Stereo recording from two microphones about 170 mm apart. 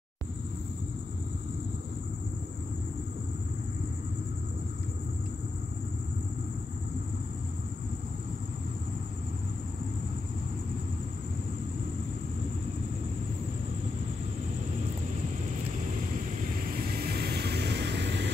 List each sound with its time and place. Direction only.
16.9 s vehicle: 65° right (ahead or behind); by 18.3 s 85° right